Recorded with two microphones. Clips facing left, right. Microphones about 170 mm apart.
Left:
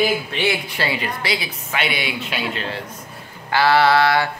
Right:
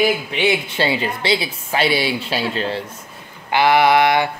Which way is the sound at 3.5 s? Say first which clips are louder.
Right 2 dB; 15° right (ahead or behind).